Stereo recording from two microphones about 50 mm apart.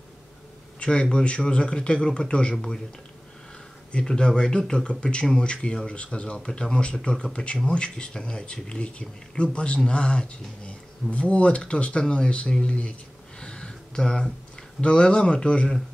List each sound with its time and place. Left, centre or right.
0.7 s a man's voice: left
2.5 s speech: centre
4.0 s speech: centre
13.4 s a sound: centre
14.8 s speech: left